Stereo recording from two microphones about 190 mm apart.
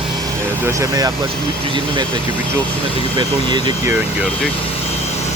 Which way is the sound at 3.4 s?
25° right (ahead or behind).